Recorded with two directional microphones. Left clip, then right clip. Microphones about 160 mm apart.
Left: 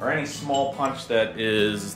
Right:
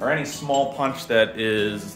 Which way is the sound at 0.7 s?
50° right (ahead or behind).